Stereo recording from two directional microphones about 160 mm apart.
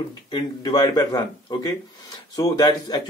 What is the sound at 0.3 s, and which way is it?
Speech, 25° left (ahead or behind).